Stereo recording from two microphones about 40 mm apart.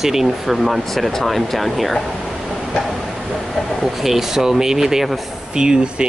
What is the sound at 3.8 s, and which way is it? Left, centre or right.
Speech, centre.